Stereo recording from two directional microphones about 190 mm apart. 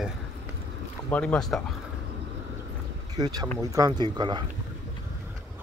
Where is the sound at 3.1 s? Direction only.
20° right (ahead or behind).